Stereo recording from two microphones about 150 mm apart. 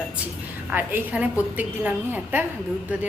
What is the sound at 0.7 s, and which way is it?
A woman's voice, 15° right (ahead or behind).